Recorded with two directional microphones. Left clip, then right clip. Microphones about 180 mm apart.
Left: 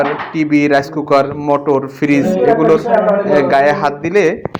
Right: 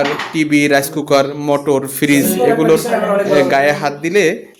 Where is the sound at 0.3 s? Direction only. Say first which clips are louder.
Even; 25° right (ahead or behind).